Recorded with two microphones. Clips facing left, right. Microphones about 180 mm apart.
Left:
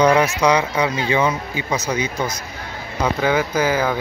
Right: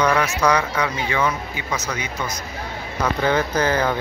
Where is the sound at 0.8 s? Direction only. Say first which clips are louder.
Left 3 dB; 25° left (ahead or behind).